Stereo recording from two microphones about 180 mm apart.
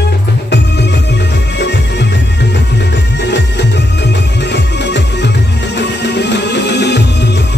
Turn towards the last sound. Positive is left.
turn(degrees=70)  # may be behind; listen again after turning